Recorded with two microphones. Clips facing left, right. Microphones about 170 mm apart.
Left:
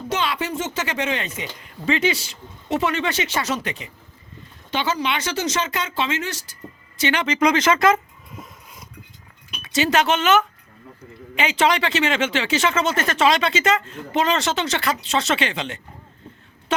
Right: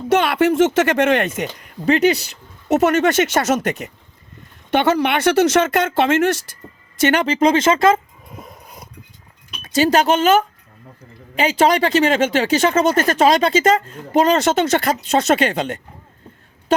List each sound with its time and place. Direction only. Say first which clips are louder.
0.1 s speech: right 10 dB; 60° right (ahead or behind)
4.7 s speech: right 7 dB; 60° right (ahead or behind)
7.0 s speech: right 5 dB; 40° right (ahead or behind)
8.4 s a sound: right 3 dB; 60° right (ahead or behind)
9.6 s speech: right 4 dB; 40° right (ahead or behind)